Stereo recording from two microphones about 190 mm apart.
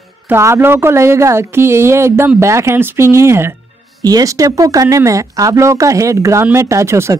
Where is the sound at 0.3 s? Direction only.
15° right (ahead or behind).